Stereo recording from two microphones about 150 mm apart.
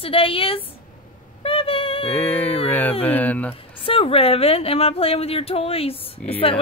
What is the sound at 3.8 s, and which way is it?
A woman's voice, 40° left (ahead or behind).